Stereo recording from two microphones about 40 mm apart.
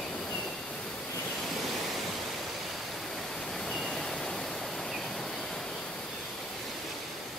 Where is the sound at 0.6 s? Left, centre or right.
Left.